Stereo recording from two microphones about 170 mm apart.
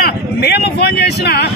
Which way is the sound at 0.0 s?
70° left (ahead or behind).